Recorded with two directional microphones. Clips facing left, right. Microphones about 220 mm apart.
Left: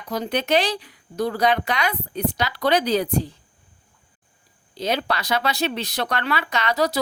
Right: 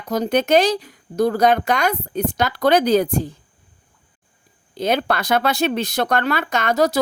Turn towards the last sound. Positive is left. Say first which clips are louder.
# right 4 dB
turn(degrees=-45)  # may be behind; listen again after turning